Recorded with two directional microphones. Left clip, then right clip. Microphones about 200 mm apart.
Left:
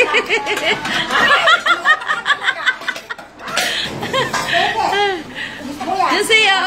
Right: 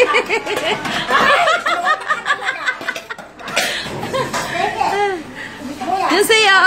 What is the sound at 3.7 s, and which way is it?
Cough, 10° right (ahead or behind).